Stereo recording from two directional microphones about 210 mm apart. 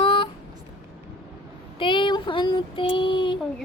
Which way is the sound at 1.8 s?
25° left (ahead or behind).